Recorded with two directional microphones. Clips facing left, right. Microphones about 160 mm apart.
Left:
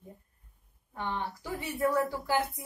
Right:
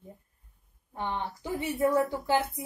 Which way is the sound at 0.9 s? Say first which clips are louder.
Right 2 dB; 20° right (ahead or behind).